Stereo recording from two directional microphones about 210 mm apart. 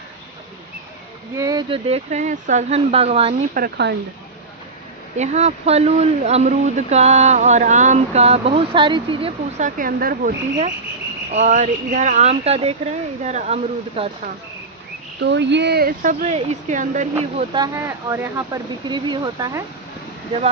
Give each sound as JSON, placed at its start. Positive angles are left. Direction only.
{"t": 1.4, "sound": "speech", "side_deg": -20}
{"t": 3.5, "sound": "speech", "side_deg": -50}
{"t": 5.1, "sound": "speech", "side_deg": -30}
{"t": 11.3, "sound": "speech", "side_deg": -35}
{"t": 15.2, "sound": "speech", "side_deg": -55}